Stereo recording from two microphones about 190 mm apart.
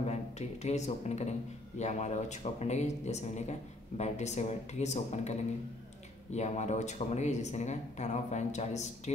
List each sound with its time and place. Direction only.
0.0 s speech: 35° left (ahead or behind)
6.3 s speech: 35° left (ahead or behind)